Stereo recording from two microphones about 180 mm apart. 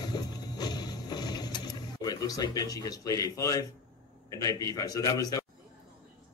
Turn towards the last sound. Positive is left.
turn(degrees=20)  # may be behind; listen again after turning